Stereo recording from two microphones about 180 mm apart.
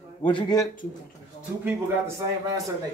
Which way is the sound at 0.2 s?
25° left (ahead or behind).